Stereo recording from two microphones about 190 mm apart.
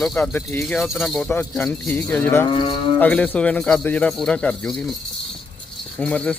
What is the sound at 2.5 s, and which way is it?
Speech, 25° left (ahead or behind).